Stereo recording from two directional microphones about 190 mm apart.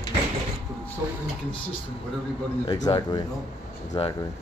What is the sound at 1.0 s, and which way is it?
Speech, 15° right (ahead or behind).